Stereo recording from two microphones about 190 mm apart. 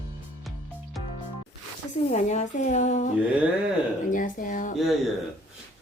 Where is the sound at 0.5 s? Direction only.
Centre (ahead or behind).